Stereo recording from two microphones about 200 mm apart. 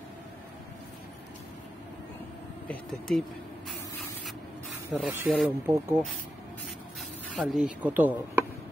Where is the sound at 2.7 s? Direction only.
5° left (ahead or behind).